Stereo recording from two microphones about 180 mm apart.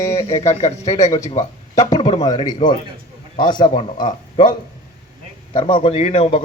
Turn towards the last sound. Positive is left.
turn(degrees=35)  # may be behind; listen again after turning